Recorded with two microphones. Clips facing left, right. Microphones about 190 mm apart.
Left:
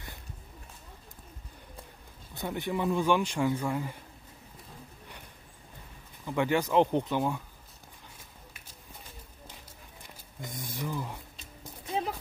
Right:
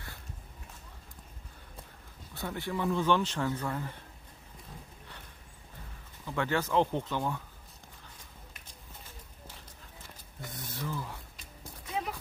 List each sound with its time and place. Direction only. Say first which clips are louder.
2.3 s speech: left 3 dB; 20° left (ahead or behind)
6.2 s speech: left 4 dB; 15° left (ahead or behind)
10.0 s a sound: left 3 dB; 15° left (ahead or behind)
11.8 s music: left 3 dB; 30° left (ahead or behind)